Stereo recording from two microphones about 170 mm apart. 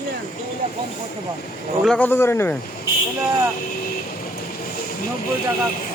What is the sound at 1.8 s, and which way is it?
Speech, 5° left (ahead or behind).